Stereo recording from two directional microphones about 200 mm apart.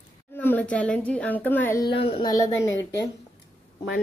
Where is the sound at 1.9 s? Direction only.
25° left (ahead or behind).